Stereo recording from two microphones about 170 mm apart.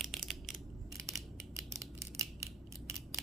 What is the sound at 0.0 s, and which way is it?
Crushing, centre (ahead or behind).